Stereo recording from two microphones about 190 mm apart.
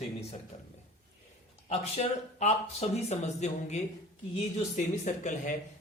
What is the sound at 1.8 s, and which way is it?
Speech, 35° left (ahead or behind).